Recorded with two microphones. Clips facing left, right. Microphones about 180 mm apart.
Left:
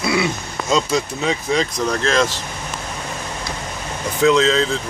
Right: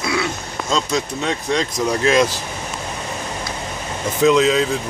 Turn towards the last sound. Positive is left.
turn(degrees=-10)  # may be behind; listen again after turning